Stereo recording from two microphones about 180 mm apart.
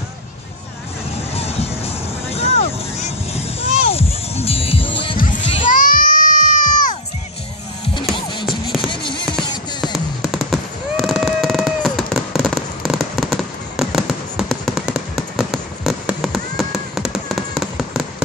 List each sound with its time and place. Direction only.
1.3 s music: 35° left (ahead or behind)
2.3 s vehicle: 35° left (ahead or behind)
5.6 s children playing: 50° left (ahead or behind)
7.8 s music: 25° left (ahead or behind)
8.5 s music: centre (ahead or behind)
8.8 s music: 25° left (ahead or behind)
9.9 s fireworks: centre (ahead or behind)